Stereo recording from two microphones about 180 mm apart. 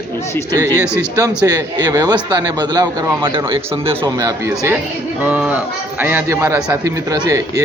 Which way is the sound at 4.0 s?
20° right (ahead or behind).